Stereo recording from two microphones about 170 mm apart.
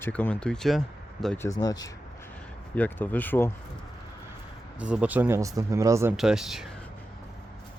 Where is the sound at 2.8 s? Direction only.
10° left (ahead or behind).